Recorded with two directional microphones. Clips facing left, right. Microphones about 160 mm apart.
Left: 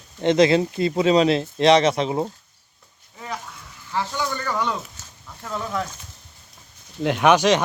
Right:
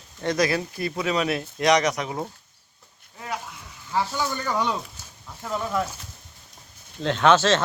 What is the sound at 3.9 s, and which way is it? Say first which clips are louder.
Speech: even; 15° right (ahead or behind).